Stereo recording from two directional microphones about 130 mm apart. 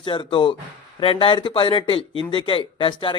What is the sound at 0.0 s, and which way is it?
A man's voice, 40° left (ahead or behind).